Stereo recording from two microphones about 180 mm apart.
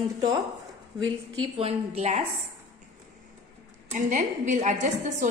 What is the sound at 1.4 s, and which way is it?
Speech, 35° right (ahead or behind).